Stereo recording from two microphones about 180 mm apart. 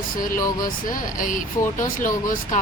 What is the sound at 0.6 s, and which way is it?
Speech, 50° left (ahead or behind).